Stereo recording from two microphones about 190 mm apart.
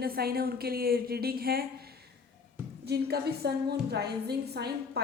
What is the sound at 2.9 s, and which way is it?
A woman's voice, 55° right (ahead or behind).